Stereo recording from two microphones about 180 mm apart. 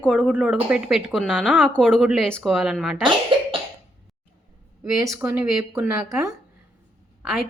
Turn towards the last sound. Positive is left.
turn(degrees=0)  # may be behind; listen again after turning